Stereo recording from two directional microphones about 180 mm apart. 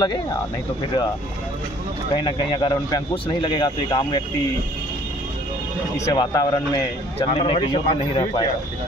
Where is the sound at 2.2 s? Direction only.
25° left (ahead or behind).